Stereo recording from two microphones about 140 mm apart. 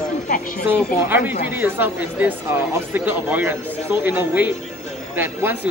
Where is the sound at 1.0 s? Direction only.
15° right (ahead or behind).